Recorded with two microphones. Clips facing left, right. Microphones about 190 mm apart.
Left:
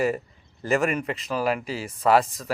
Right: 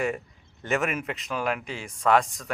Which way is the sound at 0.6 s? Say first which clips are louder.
Left 4 dB; centre (ahead or behind).